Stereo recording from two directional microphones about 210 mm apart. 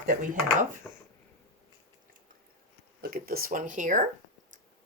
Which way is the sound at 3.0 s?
45° right (ahead or behind).